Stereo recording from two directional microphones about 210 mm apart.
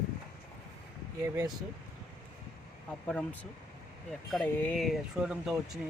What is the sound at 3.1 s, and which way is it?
Speech, 5° left (ahead or behind).